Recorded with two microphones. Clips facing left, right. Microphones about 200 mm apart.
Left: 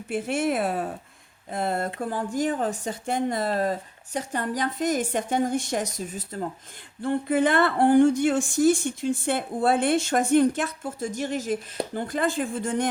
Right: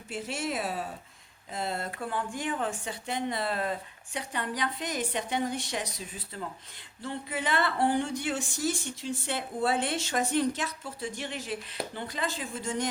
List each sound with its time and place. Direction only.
0.1 s speech: 55° left (ahead or behind)
2.0 s speech: 40° left (ahead or behind)